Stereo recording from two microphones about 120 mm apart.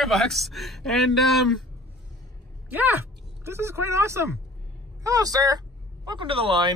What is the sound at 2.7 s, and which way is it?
A woman's voice, 15° right (ahead or behind).